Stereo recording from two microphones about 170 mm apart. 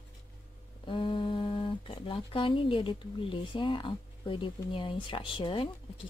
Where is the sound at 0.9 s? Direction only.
30° left (ahead or behind).